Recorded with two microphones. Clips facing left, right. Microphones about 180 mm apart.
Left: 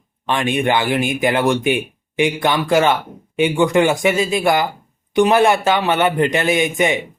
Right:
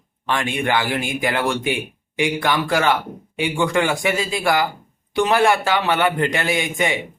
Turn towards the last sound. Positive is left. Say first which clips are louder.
# left 5 dB
turn(degrees=20)  # may be behind; listen again after turning